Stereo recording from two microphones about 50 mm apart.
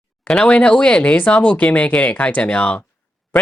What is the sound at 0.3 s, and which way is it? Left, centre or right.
Speech, left.